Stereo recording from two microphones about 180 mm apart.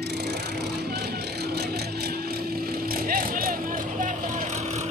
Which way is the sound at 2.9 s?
55° right (ahead or behind).